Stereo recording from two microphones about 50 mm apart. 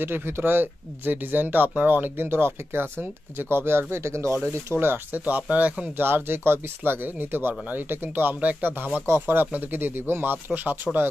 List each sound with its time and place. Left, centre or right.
0.0 s speech: right
4.7 s speech: right
5.1 s speech: right
5.9 s speech: right
9.0 s speech: right